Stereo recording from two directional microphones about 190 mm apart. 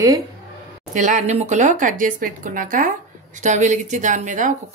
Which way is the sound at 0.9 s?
40° right (ahead or behind).